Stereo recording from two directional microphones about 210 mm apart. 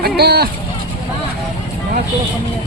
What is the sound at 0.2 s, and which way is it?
Speech, 50° right (ahead or behind).